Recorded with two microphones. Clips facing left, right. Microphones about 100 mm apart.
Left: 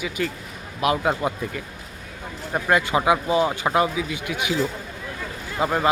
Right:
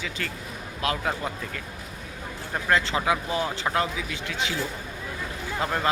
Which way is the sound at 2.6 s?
15° left (ahead or behind).